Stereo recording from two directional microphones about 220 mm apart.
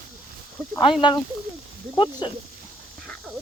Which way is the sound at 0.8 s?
20° left (ahead or behind).